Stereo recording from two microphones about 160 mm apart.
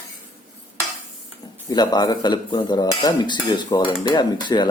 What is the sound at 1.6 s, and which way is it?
Cutlery, 25° left (ahead or behind).